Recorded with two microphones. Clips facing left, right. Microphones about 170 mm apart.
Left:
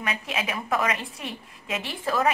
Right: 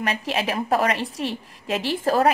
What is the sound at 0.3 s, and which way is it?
A woman's voice, 35° right (ahead or behind).